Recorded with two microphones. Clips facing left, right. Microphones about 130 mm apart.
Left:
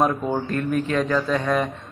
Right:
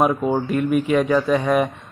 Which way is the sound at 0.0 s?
10° right (ahead or behind).